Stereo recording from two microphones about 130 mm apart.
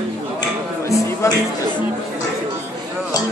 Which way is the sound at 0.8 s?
25° left (ahead or behind).